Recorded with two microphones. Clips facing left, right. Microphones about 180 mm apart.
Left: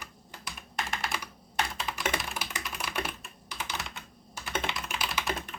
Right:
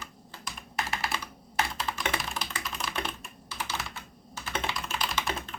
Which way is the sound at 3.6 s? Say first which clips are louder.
Right 2 dB; 15° left (ahead or behind).